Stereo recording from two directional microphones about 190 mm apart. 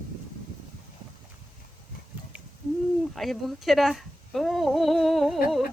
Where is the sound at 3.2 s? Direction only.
Centre (ahead or behind).